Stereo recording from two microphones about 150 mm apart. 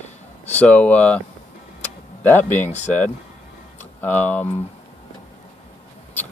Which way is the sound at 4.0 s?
10° left (ahead or behind).